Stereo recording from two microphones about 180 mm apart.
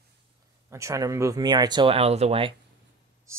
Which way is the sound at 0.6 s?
15° right (ahead or behind).